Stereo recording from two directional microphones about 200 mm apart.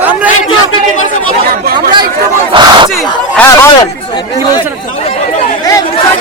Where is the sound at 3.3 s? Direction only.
10° left (ahead or behind).